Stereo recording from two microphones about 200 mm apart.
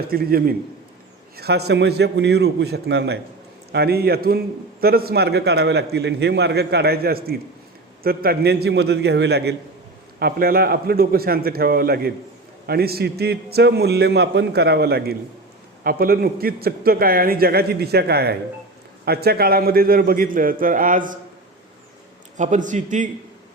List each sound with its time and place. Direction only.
0.0 s a man's voice: 50° right (ahead or behind)
22.4 s a man's voice: 40° right (ahead or behind)